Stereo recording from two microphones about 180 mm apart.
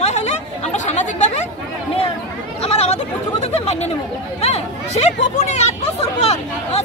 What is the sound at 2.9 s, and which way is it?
Chatter, 35° left (ahead or behind).